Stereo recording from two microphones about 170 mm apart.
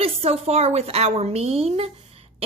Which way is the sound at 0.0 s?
35° right (ahead or behind).